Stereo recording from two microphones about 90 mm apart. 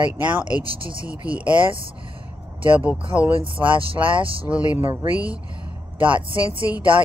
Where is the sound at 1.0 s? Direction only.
15° right (ahead or behind).